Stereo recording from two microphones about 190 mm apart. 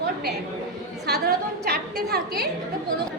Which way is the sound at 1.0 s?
60° right (ahead or behind).